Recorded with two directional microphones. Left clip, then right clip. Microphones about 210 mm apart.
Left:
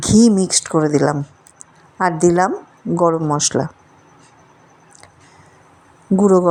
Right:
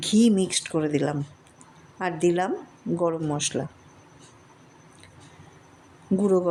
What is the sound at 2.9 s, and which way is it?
Speech, 20° left (ahead or behind).